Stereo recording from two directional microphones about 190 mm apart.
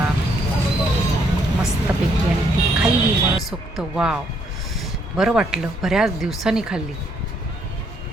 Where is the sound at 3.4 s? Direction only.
Centre (ahead or behind).